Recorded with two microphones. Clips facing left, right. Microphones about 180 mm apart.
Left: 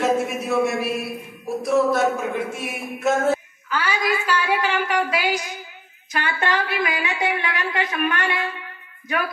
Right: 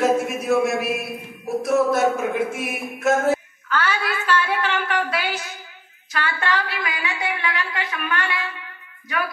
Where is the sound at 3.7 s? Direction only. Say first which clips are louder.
Left 1 dB; 10° left (ahead or behind).